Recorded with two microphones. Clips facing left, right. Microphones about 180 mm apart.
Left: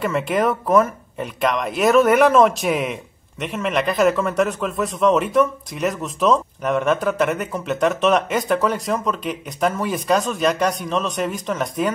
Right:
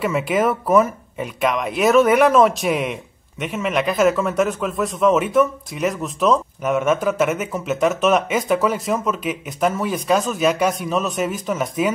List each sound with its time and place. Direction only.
0.0 s speech: 5° right (ahead or behind)